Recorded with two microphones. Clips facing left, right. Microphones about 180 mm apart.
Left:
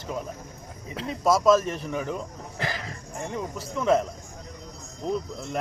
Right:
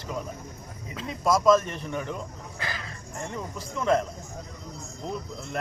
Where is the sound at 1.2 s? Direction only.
5° left (ahead or behind).